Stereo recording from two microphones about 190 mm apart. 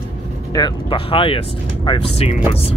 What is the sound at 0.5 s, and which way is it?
Speech, 25° left (ahead or behind).